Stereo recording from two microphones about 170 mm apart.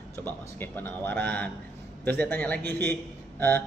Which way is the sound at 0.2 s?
10° left (ahead or behind).